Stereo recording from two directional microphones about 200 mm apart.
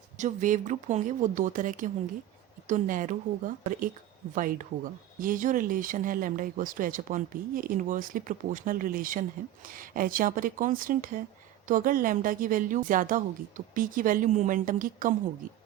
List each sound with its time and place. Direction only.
0.2 s speech: 40° right (ahead or behind)